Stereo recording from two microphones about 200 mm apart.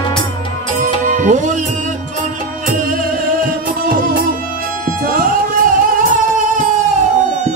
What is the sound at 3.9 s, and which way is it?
Music, 45° right (ahead or behind).